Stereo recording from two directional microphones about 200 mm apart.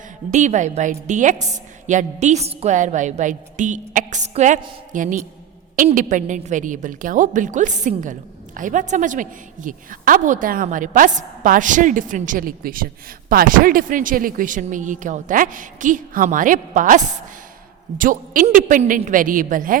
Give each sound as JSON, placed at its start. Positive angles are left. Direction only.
{"t": 0.3, "sound": "a woman's voice", "side_deg": -35}